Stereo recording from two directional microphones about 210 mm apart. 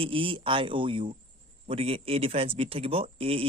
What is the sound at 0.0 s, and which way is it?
Speech, 25° right (ahead or behind).